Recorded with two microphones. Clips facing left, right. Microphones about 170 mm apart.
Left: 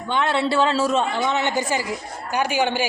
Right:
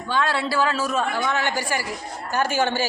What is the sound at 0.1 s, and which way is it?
A woman's voice, 25° left (ahead or behind).